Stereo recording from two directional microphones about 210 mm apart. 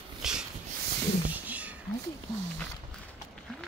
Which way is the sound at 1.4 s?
5° right (ahead or behind).